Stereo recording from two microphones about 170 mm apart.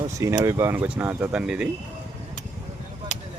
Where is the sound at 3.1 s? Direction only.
45° left (ahead or behind).